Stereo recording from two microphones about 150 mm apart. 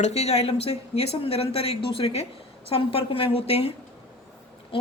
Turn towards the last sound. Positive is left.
turn(degrees=45)  # may be behind; listen again after turning